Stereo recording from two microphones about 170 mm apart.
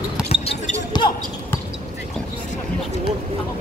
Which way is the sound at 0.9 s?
25° left (ahead or behind).